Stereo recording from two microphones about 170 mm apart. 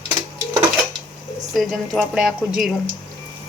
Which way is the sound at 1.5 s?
Centre (ahead or behind).